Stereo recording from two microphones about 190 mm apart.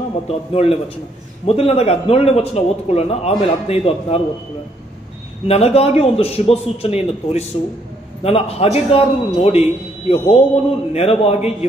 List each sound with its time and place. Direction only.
0.3 s a man's voice: 30° left (ahead or behind)
5.5 s a man's voice: 30° left (ahead or behind)